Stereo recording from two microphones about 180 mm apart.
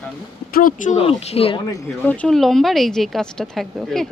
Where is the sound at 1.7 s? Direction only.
10° left (ahead or behind).